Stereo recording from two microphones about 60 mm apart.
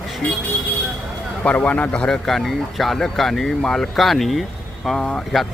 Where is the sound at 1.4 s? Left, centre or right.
Left.